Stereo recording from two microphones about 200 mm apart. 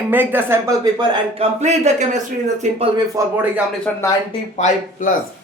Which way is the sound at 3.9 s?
5° left (ahead or behind).